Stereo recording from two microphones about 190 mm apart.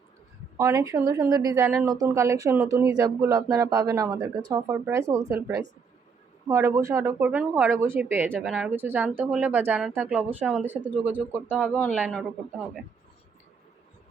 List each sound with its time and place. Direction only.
0.5 s speech: 15° right (ahead or behind)
8.3 s speech: 5° left (ahead or behind)
11.6 s speech: 10° left (ahead or behind)
12.1 s a man's voice: centre (ahead or behind)